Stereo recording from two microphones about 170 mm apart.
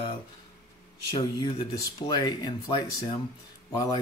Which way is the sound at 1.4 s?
25° left (ahead or behind).